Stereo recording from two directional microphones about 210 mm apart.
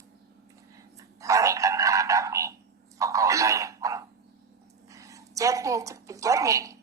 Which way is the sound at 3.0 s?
15° right (ahead or behind).